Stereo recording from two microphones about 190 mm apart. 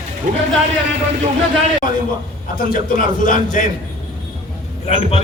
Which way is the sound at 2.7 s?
45° left (ahead or behind).